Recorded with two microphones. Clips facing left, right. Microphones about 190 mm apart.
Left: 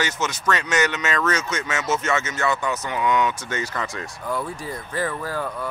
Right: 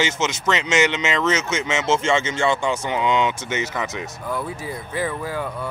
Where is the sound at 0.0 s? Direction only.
25° right (ahead or behind).